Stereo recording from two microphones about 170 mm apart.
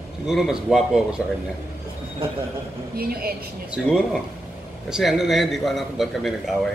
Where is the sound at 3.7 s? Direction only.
5° right (ahead or behind).